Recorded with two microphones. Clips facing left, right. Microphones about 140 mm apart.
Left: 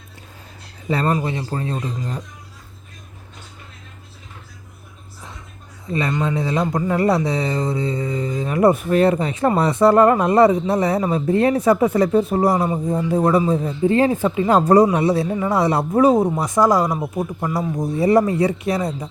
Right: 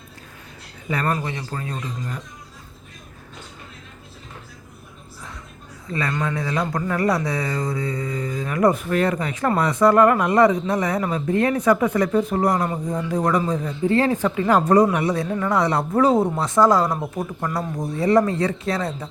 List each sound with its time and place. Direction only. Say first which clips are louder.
0.9 s speech: left 4 dB; 30° left (ahead or behind)
5.9 s speech: left 3 dB; 20° left (ahead or behind)
12.5 s speech: left 3 dB; 10° left (ahead or behind)
13.1 s speech: left 4 dB; 25° left (ahead or behind)
14.5 s speech: left 3 dB; 35° left (ahead or behind)
15.3 s speech: left 2 dB; 15° left (ahead or behind)
16.6 s speech: even; centre (ahead or behind)
17.9 s speech: left 2 dB; 20° left (ahead or behind)